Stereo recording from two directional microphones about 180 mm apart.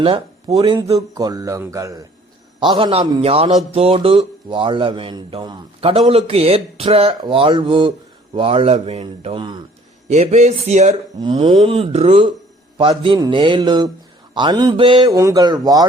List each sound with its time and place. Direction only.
0.0 s speech: 30° right (ahead or behind)
2.6 s a man's voice: 30° right (ahead or behind)
10.1 s a man's voice: 40° right (ahead or behind)
11.2 s speech: 25° right (ahead or behind)